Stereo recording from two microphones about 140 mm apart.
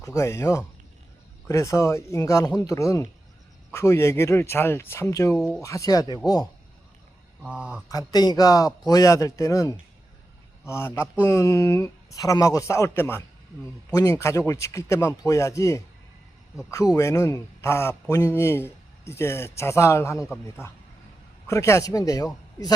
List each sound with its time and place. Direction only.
0.0 s a man's voice: 20° left (ahead or behind)
5.4 s speech: 5° left (ahead or behind)
5.6 s a man's voice: 25° left (ahead or behind)
7.4 s speech: 5° right (ahead or behind)
7.9 s a man's voice: 25° left (ahead or behind)
21.4 s a man's voice: 20° left (ahead or behind)